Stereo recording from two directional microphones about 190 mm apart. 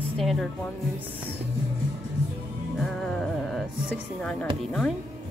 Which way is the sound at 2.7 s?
Centre (ahead or behind).